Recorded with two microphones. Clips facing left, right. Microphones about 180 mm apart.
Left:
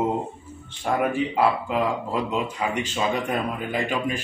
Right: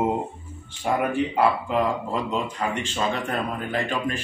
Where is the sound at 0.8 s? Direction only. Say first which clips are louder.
Even; centre (ahead or behind).